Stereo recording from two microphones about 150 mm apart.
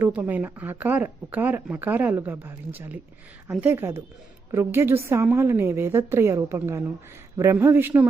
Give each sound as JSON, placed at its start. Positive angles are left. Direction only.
{"t": 0.0, "sound": "speech", "side_deg": -10}